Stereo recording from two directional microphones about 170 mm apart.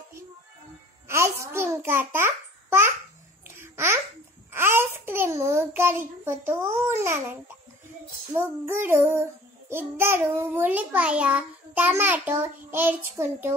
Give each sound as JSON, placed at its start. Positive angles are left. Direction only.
{"t": 1.0, "sound": "a child's voice", "side_deg": -15}
{"t": 3.4, "sound": "babbling", "side_deg": -15}
{"t": 4.5, "sound": "a sound", "side_deg": -15}
{"t": 8.4, "sound": "child singing", "side_deg": -15}